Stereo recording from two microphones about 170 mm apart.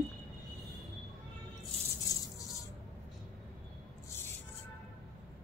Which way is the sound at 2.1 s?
20° left (ahead or behind).